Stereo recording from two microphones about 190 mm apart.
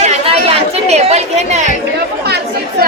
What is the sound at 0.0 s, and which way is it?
Chatter, 35° right (ahead or behind).